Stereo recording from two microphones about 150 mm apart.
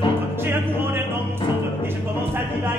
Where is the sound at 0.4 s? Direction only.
15° right (ahead or behind).